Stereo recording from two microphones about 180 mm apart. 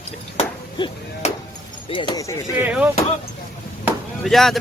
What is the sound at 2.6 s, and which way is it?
Speech, 10° right (ahead or behind).